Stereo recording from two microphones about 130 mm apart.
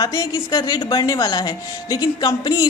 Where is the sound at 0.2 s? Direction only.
30° left (ahead or behind).